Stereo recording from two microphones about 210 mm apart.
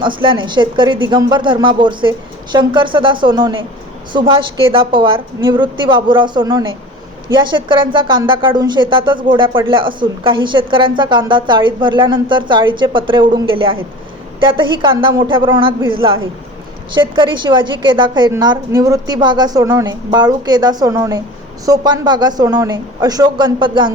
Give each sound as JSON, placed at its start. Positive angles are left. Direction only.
{"t": 0.0, "sound": "a woman's voice", "side_deg": -25}